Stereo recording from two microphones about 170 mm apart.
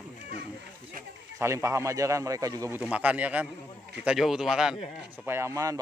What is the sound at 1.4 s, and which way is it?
Speech, 15° right (ahead or behind).